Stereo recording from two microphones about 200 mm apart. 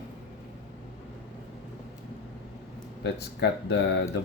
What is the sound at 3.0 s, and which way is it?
Speech, 55° left (ahead or behind).